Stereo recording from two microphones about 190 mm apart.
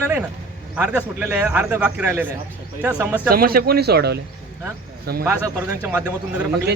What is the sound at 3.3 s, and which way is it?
Speech, 50° right (ahead or behind).